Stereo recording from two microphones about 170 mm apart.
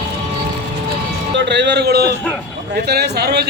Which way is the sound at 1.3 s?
90° right.